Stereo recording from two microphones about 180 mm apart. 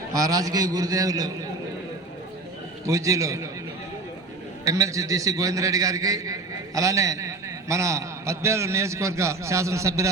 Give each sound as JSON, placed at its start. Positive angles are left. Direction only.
{"t": 0.1, "sound": "a man's voice", "side_deg": -20}
{"t": 2.8, "sound": "a man's voice", "side_deg": -15}
{"t": 4.6, "sound": "a man's voice", "side_deg": -15}